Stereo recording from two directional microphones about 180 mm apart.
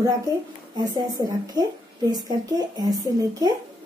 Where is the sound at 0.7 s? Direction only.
20° right (ahead or behind).